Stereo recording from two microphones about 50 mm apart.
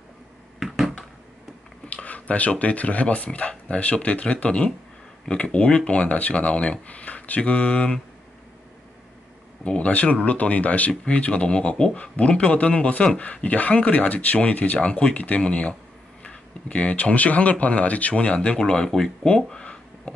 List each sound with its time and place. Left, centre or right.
0.6 s a sound: centre
2.0 s speech: left
9.7 s speech: left